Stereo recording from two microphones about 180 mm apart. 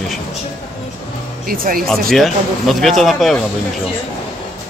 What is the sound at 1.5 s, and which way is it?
Speech, 55° right (ahead or behind).